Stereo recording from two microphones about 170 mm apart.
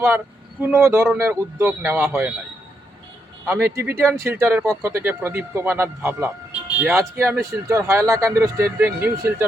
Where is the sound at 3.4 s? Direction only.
15° right (ahead or behind).